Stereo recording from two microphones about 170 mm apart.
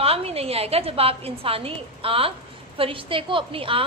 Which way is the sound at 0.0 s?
35° right (ahead or behind).